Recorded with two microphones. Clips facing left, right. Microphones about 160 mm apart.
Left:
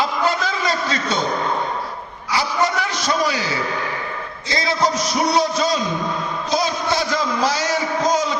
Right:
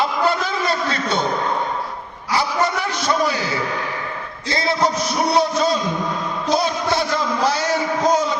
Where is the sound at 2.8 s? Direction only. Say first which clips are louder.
Right 1 dB; 60° right (ahead or behind).